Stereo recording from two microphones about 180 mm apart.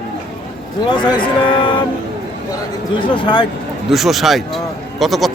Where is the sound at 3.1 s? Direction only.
25° left (ahead or behind).